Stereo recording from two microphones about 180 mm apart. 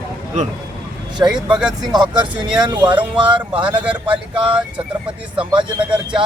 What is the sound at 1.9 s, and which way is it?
Speech, 25° right (ahead or behind).